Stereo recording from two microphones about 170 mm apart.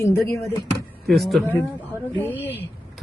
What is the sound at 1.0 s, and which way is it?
Speech, centre (ahead or behind).